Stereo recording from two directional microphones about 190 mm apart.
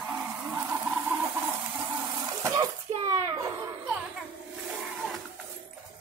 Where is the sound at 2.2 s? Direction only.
20° right (ahead or behind).